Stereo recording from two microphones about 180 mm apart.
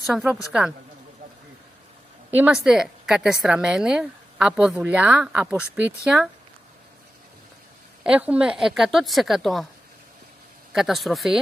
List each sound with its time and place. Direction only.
0.0 s a woman's voice: 5° right (ahead or behind)
2.3 s a woman's voice: 5° right (ahead or behind)
8.0 s a woman's voice: 5° right (ahead or behind)
10.7 s a woman's voice: centre (ahead or behind)